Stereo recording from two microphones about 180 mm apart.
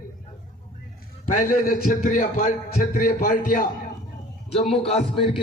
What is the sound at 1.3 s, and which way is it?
Music, 50° left (ahead or behind).